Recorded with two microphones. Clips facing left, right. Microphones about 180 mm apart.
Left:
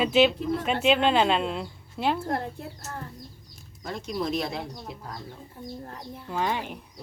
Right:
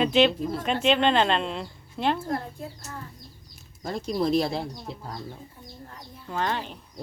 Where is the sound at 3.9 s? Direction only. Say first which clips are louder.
Right 4 dB; 35° right (ahead or behind).